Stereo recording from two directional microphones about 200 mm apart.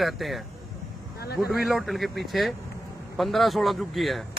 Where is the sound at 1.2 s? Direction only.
50° left (ahead or behind).